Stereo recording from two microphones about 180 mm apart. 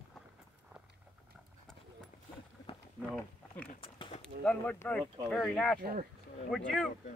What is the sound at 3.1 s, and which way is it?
Speech, 10° left (ahead or behind).